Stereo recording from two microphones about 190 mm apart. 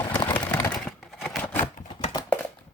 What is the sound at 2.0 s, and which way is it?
Computer keyboard, 20° left (ahead or behind).